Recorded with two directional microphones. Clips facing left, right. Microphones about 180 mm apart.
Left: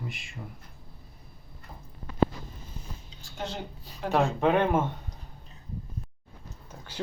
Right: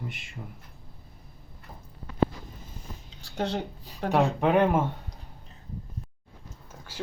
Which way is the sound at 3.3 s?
70° right (ahead or behind).